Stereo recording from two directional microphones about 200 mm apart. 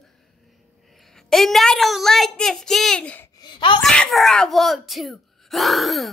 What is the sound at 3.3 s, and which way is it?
Speech, 20° left (ahead or behind).